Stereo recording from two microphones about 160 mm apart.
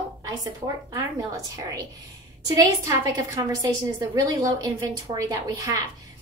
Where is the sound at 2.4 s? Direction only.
20° right (ahead or behind).